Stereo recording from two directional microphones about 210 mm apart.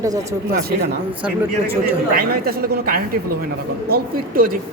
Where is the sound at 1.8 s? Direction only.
45° right (ahead or behind).